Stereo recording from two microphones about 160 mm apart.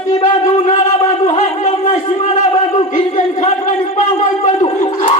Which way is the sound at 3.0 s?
45° left (ahead or behind).